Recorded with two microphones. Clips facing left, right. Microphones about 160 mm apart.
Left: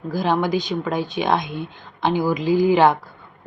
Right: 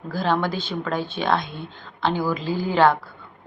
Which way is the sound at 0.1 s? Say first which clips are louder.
Left 3 dB; 15° left (ahead or behind).